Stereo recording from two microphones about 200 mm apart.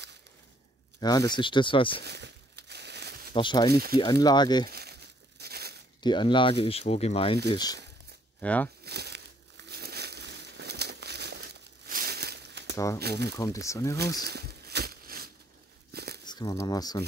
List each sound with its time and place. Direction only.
1.0 s speech: 20° left (ahead or behind)
2.0 s crumpling: 55° right (ahead or behind)
3.3 s speech: 20° left (ahead or behind)
4.6 s crumpling: 55° right (ahead or behind)
6.0 s speech: 25° left (ahead or behind)
8.4 s speech: 5° left (ahead or behind)
8.8 s a sound: 55° right (ahead or behind)
9.7 s crumpling: 55° right (ahead or behind)
12.7 s speech: 15° left (ahead or behind)
14.2 s a sound: 55° right (ahead or behind)
16.3 s speech: 20° left (ahead or behind)